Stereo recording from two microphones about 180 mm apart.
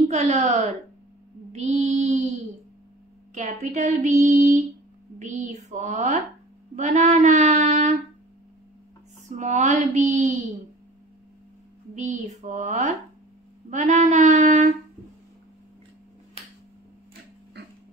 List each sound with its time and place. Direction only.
0.1 s child singing: 35° right (ahead or behind)
1.5 s mantra: 40° right (ahead or behind)
3.3 s child singing: 45° right (ahead or behind)
6.7 s speech: 40° right (ahead or behind)
9.4 s child singing: 40° right (ahead or behind)
11.9 s child singing: 40° right (ahead or behind)